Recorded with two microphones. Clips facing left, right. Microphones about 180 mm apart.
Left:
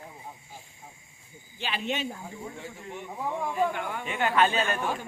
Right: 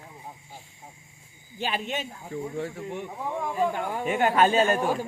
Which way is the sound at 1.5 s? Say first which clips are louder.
Right 1 dB; 45° right (ahead or behind).